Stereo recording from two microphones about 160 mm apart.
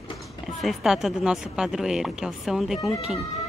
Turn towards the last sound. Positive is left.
turn(degrees=0)  # may be behind; listen again after turning